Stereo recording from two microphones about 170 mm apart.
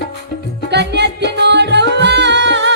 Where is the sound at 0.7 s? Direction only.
85° right.